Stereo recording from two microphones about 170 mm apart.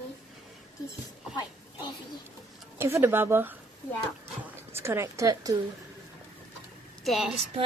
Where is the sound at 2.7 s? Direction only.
15° right (ahead or behind).